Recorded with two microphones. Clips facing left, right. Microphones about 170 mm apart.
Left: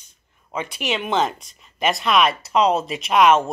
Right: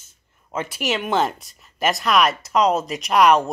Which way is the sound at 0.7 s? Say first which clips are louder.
Right 1 dB; 5° right (ahead or behind).